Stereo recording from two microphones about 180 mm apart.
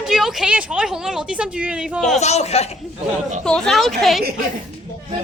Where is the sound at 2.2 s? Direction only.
35° left (ahead or behind).